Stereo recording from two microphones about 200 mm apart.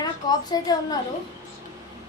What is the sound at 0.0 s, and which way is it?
Speech, 20° left (ahead or behind).